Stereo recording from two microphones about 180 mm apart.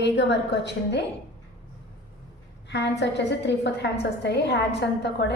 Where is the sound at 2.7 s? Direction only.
75° left (ahead or behind).